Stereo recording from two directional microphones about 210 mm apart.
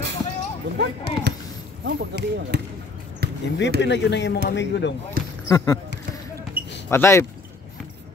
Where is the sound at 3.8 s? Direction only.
55° left (ahead or behind).